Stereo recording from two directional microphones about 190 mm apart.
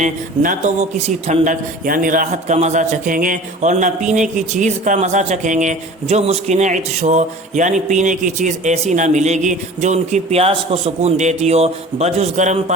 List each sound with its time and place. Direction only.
0.0 s speech: 40° right (ahead or behind)